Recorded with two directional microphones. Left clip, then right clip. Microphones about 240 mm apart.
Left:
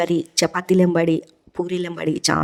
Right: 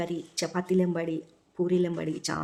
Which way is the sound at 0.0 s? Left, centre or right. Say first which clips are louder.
Left 12 dB; left.